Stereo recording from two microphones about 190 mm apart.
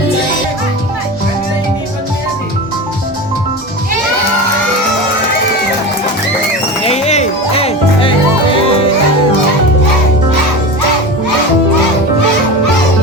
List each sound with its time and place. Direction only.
6.8 s music: 35° left (ahead or behind)